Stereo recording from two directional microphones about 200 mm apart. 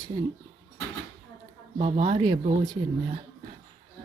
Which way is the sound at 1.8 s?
30° right (ahead or behind).